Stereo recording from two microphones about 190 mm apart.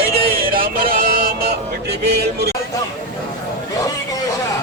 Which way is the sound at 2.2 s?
60° right (ahead or behind).